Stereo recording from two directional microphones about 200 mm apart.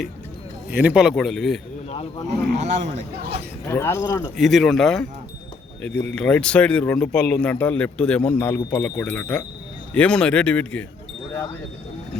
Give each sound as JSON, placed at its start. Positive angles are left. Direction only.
{"t": 0.7, "sound": "speech", "side_deg": -5}
{"t": 1.9, "sound": "speech", "side_deg": 30}
{"t": 2.6, "sound": "speech", "side_deg": -35}
{"t": 3.7, "sound": "speech", "side_deg": 10}
{"t": 4.4, "sound": "speech", "side_deg": 0}
{"t": 5.9, "sound": "speech", "side_deg": 60}
{"t": 6.1, "sound": "speech", "side_deg": 5}